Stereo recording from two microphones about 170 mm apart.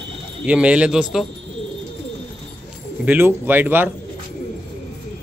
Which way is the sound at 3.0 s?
10° right (ahead or behind).